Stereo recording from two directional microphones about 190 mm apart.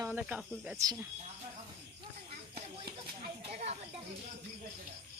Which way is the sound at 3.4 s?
35° right (ahead or behind).